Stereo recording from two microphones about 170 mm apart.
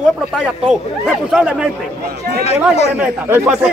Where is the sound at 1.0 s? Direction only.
5° right (ahead or behind).